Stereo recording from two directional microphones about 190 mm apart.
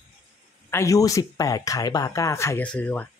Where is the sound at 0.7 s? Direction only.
15° left (ahead or behind).